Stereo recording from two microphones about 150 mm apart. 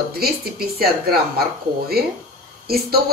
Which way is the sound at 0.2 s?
90° right.